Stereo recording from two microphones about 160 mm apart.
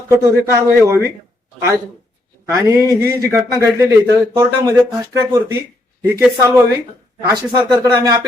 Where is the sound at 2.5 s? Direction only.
20° right (ahead or behind).